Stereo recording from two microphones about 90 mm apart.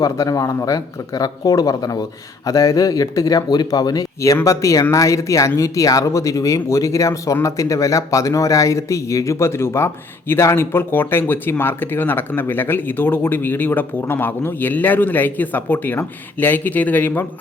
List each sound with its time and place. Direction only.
0.0 s speech: 40° left (ahead or behind); by 17.2 s 20° left (ahead or behind)